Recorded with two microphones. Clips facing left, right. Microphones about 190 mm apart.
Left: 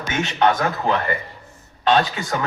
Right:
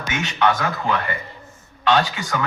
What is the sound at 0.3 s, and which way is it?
Speech, 35° left (ahead or behind).